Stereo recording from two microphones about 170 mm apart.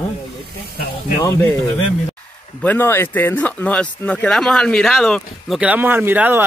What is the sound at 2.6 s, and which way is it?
Speech, 10° left (ahead or behind).